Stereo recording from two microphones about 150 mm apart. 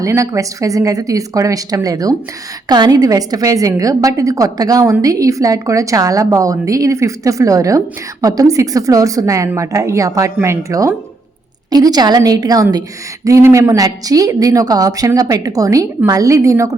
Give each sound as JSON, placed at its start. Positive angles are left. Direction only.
{"t": 0.0, "sound": "a woman's voice", "side_deg": -20}